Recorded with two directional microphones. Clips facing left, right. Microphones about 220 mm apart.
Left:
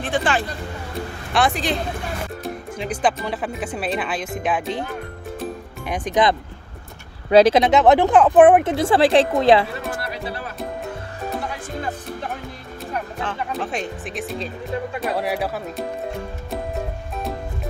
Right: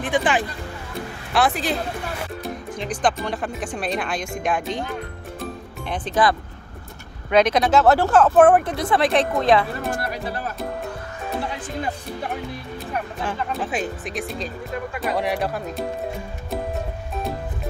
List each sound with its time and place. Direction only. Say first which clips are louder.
0.0 s speech: right 1 dB; 15° right (ahead or behind)
1.3 s speech: even; 5° right (ahead or behind)
5.9 s speech: left 2 dB; 15° left (ahead or behind)
7.2 s speech: left 4 dB; 30° left (ahead or behind)
8.7 s speech: left 4 dB; 30° left (ahead or behind)
9.8 s music: right 2 dB; 45° right (ahead or behind)
12.9 s music: even; 10° right (ahead or behind)
13.5 s speech: right 1 dB; centre (ahead or behind)